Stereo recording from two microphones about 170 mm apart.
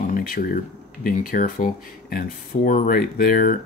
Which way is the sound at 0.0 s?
55° left (ahead or behind).